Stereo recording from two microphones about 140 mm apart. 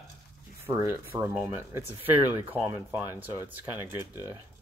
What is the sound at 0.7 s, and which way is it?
Speech, 15° right (ahead or behind).